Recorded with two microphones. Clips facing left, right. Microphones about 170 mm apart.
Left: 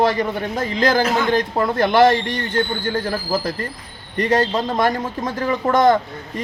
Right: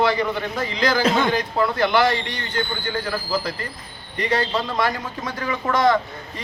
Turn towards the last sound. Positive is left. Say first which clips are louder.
# left 4 dB
turn(degrees=50)  # may be behind; listen again after turning